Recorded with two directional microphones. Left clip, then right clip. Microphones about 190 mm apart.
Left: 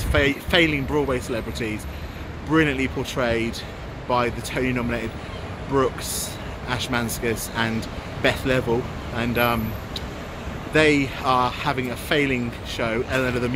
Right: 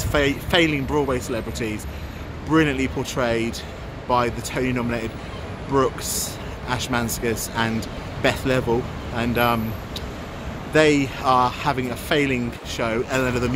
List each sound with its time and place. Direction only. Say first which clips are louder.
0.1 s speech: even; 5° right (ahead or behind)
10.7 s speech: right 1 dB; 5° right (ahead or behind)